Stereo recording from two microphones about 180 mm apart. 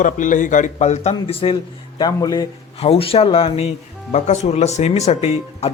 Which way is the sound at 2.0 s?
20° left (ahead or behind).